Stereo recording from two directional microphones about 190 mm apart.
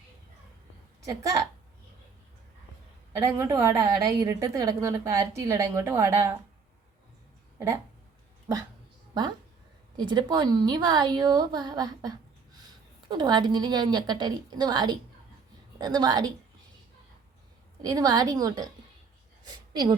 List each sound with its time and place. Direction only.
1.0 s a woman's voice: 15° right (ahead or behind)
3.2 s a woman's voice: 15° right (ahead or behind)
10.0 s a woman's voice: 25° right (ahead or behind)
17.8 s a woman's voice: 20° right (ahead or behind)
19.7 s a woman's voice: 25° right (ahead or behind)